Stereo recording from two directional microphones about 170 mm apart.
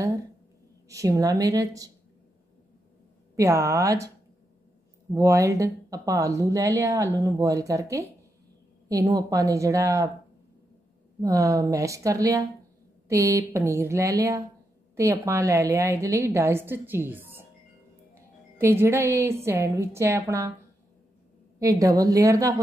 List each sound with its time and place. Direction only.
0.8 s speech: 20° right (ahead or behind)
3.3 s a woman's voice: 15° right (ahead or behind)
5.1 s speech: 15° right (ahead or behind)
11.1 s a woman's voice: 20° right (ahead or behind)
18.6 s a woman's voice: 15° right (ahead or behind)
21.5 s speech: 20° right (ahead or behind)